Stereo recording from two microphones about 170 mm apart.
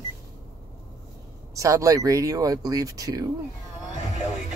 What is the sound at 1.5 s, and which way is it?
Speech, 20° right (ahead or behind).